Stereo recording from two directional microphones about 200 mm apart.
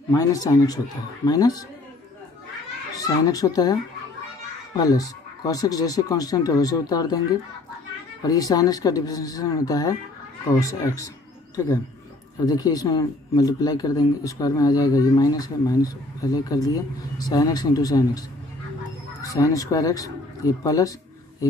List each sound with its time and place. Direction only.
0.1 s speech: 15° left (ahead or behind)
3.0 s speech: 20° left (ahead or behind)
4.7 s speech: 20° left (ahead or behind)
8.3 s speech: 15° left (ahead or behind)
12.4 s speech: 20° left (ahead or behind)
19.2 s speech: 15° left (ahead or behind)